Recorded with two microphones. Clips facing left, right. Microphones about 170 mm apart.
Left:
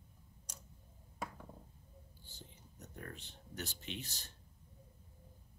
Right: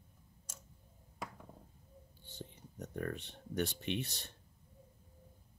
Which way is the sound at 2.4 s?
75° right (ahead or behind).